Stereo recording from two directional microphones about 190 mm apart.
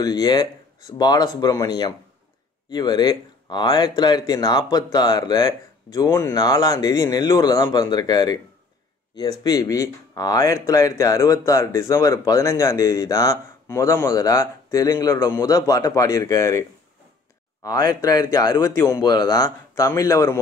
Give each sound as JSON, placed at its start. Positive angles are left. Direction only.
{"t": 0.0, "sound": "speech", "side_deg": 20}
{"t": 17.6, "sound": "speech", "side_deg": 20}